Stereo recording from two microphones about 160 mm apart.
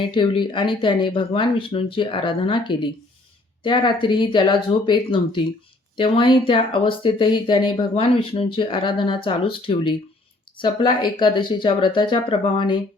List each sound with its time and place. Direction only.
0.1 s speech: 30° left (ahead or behind)